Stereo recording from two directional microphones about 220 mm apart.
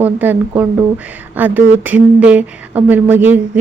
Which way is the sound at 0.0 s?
10° right (ahead or behind).